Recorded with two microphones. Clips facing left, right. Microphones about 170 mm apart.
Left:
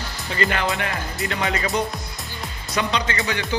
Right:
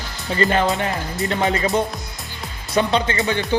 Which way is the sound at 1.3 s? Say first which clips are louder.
Right 5 dB; 25° right (ahead or behind).